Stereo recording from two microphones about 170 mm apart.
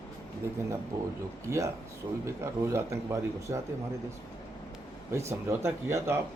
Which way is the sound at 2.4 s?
15° right (ahead or behind).